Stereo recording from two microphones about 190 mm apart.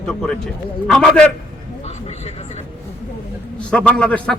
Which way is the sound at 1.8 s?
35° left (ahead or behind).